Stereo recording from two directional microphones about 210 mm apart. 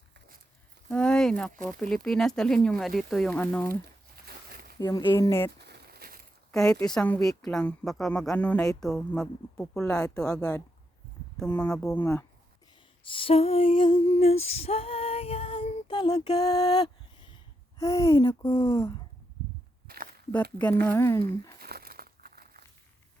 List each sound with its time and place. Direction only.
0.9 s a woman's voice: 5° left (ahead or behind)
4.3 s a sound: 45° right (ahead or behind)
4.8 s speech: 20° left (ahead or behind)
5.5 s a sound: 50° right (ahead or behind)
6.5 s a woman's voice: 5° left (ahead or behind)
13.1 s female singing: 25° left (ahead or behind)
17.7 s speech: 15° left (ahead or behind)
19.9 s a sound: 45° right (ahead or behind)
20.3 s speech: 5° left (ahead or behind)
21.6 s crumpling: 45° right (ahead or behind)